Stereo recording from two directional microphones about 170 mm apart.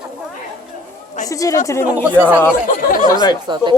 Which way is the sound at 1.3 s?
20° left (ahead or behind).